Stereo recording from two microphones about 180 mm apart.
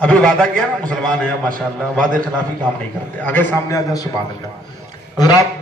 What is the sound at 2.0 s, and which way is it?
Speech, 50° right (ahead or behind).